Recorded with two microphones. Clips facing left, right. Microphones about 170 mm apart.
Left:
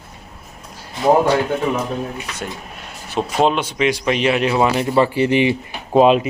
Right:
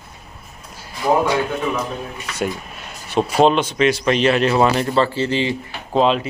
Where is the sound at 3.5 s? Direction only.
10° left (ahead or behind).